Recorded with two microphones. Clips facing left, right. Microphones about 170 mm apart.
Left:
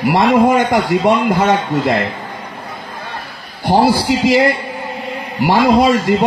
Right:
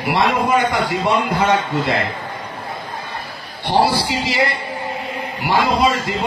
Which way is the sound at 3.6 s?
50° left (ahead or behind).